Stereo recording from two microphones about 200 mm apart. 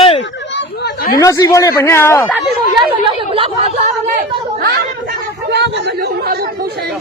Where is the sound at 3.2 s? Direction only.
25° right (ahead or behind).